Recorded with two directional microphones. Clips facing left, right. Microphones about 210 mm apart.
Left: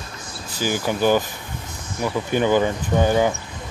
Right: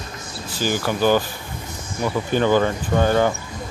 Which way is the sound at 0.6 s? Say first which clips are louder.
Even; 15° left (ahead or behind).